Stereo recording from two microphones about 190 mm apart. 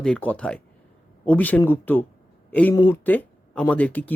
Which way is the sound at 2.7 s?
20° left (ahead or behind).